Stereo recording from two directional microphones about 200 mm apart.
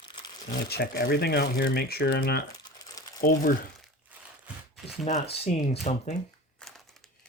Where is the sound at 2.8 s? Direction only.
20° left (ahead or behind).